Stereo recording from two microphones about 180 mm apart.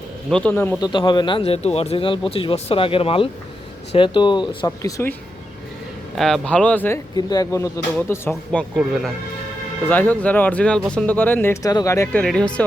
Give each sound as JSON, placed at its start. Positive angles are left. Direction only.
{"t": 0.3, "sound": "speech", "side_deg": 5}
{"t": 0.8, "sound": "speech", "side_deg": 25}
{"t": 6.1, "sound": "speech", "side_deg": 0}
{"t": 7.2, "sound": "speech", "side_deg": 20}
{"t": 8.7, "sound": "speech", "side_deg": 0}
{"t": 12.2, "sound": "speech", "side_deg": 5}